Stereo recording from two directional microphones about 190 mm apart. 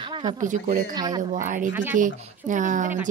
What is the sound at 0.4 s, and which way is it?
Speech, 40° right (ahead or behind).